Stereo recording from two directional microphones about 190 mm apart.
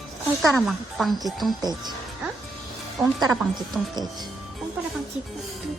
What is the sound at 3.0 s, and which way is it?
Speech, centre (ahead or behind).